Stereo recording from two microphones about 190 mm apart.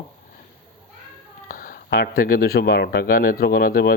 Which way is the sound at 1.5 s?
45° left (ahead or behind).